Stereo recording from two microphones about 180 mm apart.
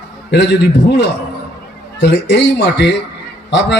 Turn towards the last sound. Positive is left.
turn(degrees=75)  # may be behind; listen again after turning